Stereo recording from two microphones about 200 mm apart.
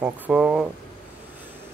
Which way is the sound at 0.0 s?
5° right (ahead or behind).